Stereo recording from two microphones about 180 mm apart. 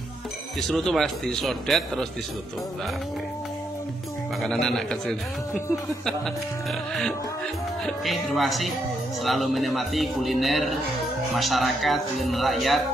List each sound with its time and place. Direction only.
0.6 s a man's voice: centre (ahead or behind)
4.4 s a man's voice: centre (ahead or behind)